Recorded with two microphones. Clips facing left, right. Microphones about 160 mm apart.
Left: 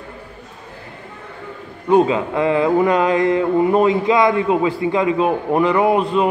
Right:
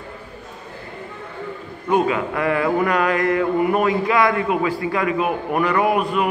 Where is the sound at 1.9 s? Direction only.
25° left (ahead or behind).